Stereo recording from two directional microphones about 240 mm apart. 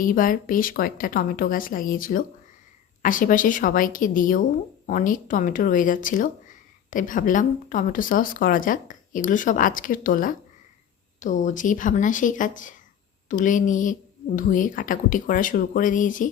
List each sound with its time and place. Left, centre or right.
0.0 s speech: left